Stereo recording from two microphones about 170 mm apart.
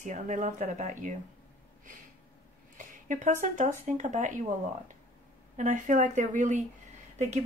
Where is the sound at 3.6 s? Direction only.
50° right (ahead or behind).